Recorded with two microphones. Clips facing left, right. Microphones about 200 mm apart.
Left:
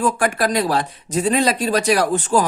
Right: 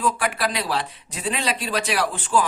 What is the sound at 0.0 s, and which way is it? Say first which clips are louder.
Speech: left 5 dB; 45° left (ahead or behind).